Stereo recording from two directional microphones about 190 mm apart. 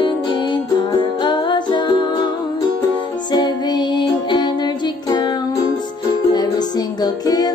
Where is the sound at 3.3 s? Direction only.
20° left (ahead or behind).